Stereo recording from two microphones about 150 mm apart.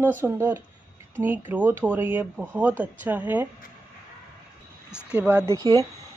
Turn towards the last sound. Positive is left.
turn(degrees=-15)  # may be behind; listen again after turning